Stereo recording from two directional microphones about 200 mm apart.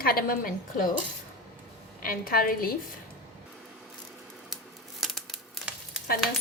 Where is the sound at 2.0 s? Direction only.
45° left (ahead or behind).